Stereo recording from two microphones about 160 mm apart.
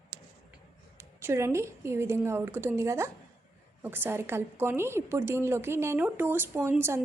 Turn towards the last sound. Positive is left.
turn(degrees=-15)  # may be behind; listen again after turning